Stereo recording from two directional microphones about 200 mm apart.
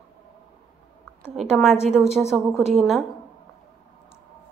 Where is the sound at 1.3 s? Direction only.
Centre (ahead or behind).